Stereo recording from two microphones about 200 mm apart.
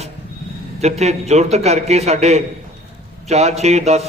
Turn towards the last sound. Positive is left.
turn(degrees=-35)  # may be behind; listen again after turning